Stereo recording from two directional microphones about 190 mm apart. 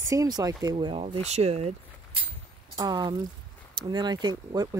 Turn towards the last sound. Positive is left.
turn(degrees=-20)  # may be behind; listen again after turning